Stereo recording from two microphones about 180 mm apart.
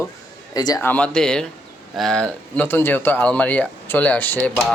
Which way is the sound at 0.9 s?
5° left (ahead or behind).